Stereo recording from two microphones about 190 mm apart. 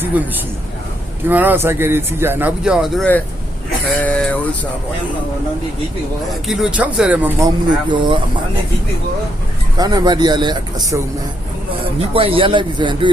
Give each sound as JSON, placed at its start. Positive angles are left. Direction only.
{"t": 0.1, "sound": "speech", "side_deg": -10}
{"t": 6.5, "sound": "speech", "side_deg": -5}
{"t": 9.7, "sound": "speech", "side_deg": -20}
{"t": 12.1, "sound": "speech", "side_deg": -30}